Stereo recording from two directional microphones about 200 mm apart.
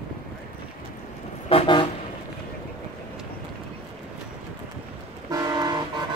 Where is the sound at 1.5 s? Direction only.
25° left (ahead or behind).